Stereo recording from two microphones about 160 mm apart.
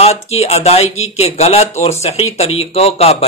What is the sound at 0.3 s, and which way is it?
Speech, 40° left (ahead or behind).